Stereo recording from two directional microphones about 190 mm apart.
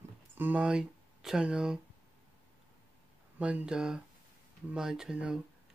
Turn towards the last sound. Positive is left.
turn(degrees=-5)  # may be behind; listen again after turning